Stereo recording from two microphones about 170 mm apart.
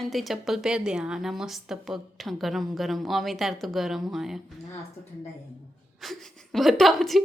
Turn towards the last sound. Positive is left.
turn(degrees=0)  # may be behind; listen again after turning